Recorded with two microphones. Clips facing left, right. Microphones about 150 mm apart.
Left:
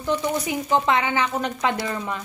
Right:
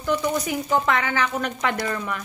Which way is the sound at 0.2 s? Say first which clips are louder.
Even; 20° left (ahead or behind).